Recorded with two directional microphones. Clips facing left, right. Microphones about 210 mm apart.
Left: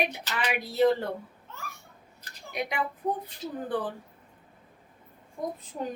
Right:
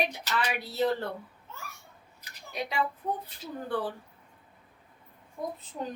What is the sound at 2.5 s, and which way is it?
Speech, 15° left (ahead or behind).